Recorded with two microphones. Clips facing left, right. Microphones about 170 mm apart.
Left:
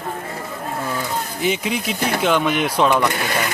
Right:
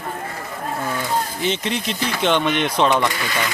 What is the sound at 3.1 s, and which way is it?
Speech, 55° left (ahead or behind).